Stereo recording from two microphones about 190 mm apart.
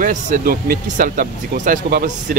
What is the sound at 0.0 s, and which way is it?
Speech, 40° right (ahead or behind).